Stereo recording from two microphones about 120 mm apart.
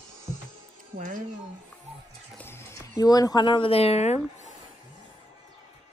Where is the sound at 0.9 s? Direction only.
90° right.